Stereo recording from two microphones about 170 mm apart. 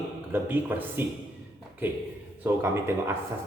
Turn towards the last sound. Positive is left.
turn(degrees=-15)  # may be behind; listen again after turning